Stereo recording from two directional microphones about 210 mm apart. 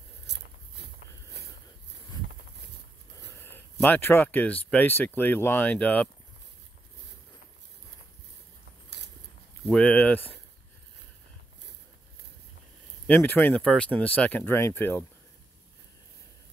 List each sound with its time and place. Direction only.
0.3 s biting: 55° right (ahead or behind)
0.8 s a sound: 55° right (ahead or behind)
3.8 s speech: 10° left (ahead or behind)
9.7 s speech: 5° left (ahead or behind)
13.0 s speech: 10° left (ahead or behind)